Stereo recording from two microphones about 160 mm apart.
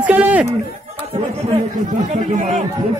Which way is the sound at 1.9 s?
50° right (ahead or behind).